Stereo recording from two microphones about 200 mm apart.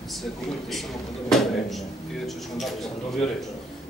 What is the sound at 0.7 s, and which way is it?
Speech, centre (ahead or behind).